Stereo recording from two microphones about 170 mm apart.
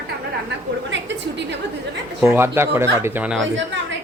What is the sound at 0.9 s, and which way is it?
Speech, 90° right.